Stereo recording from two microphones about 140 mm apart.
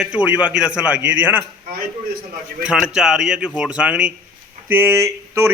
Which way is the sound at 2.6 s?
5° right (ahead or behind).